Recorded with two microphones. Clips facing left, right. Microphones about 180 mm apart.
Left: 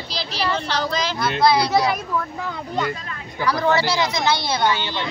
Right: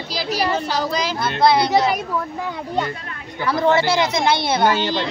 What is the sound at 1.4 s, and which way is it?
Speech, 25° right (ahead or behind).